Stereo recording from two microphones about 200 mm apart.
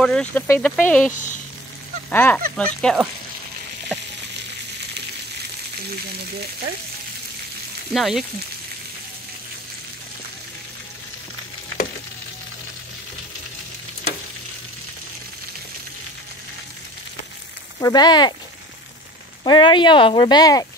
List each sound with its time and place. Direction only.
0.0 s speech: 5° left (ahead or behind)
7.9 s speech: centre (ahead or behind)
17.7 s speech: 20° left (ahead or behind)
19.4 s speech: 25° left (ahead or behind)